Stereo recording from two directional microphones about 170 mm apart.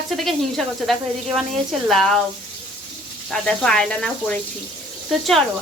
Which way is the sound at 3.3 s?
5° left (ahead or behind).